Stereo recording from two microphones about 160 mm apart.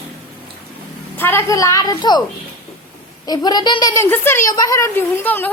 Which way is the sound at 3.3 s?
25° left (ahead or behind).